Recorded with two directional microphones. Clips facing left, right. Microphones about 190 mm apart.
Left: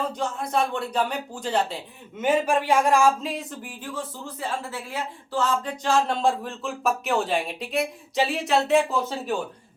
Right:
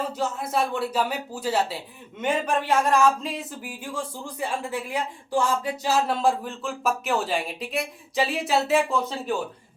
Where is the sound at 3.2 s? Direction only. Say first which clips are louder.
Left 1 dB; centre (ahead or behind).